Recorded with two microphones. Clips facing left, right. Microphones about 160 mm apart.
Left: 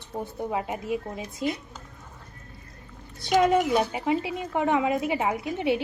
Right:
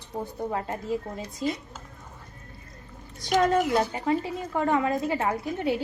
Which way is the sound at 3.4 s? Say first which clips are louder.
Left 1 dB; 10° left (ahead or behind).